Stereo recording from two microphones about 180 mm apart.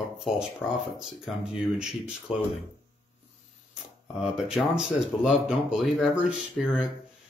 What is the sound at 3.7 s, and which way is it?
Speech, 5° right (ahead or behind).